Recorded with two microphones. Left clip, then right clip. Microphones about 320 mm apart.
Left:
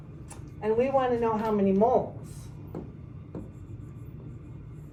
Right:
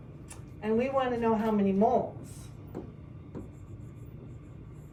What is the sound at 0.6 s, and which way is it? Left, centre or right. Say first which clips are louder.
A woman's voice: left 4 dB; centre.